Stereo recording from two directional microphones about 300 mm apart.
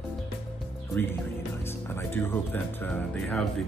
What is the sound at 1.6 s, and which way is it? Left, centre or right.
Music, centre.